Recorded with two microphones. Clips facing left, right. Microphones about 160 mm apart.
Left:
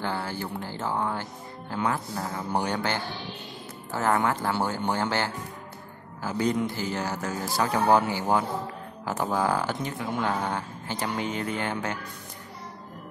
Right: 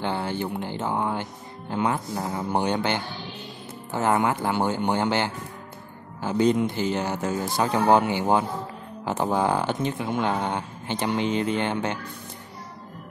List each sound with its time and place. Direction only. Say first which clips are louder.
0.0 s speech: right 4 dB; 20° right (ahead or behind)